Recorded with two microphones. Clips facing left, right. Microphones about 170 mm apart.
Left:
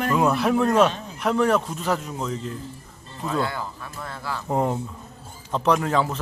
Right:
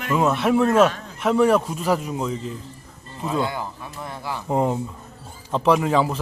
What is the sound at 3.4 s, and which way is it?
A man's voice, 15° right (ahead or behind).